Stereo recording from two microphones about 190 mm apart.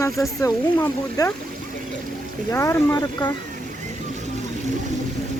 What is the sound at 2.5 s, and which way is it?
Speech, 15° left (ahead or behind).